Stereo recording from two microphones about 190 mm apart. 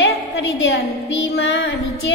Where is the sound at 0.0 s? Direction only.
80° left.